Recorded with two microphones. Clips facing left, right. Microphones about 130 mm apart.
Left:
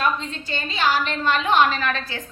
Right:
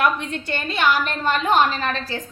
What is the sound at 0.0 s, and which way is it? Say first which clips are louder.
A woman's voice: right 3 dB; 65° right (ahead or behind).